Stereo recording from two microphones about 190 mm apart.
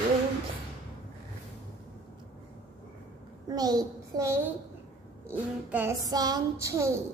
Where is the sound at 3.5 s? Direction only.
20° right (ahead or behind).